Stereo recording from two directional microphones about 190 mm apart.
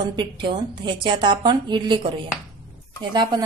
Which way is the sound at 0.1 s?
25° right (ahead or behind).